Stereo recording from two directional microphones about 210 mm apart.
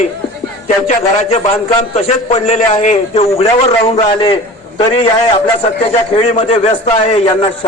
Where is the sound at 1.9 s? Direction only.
30° left (ahead or behind).